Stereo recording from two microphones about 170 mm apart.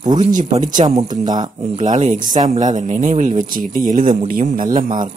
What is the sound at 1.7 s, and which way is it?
Speech, 45° right (ahead or behind).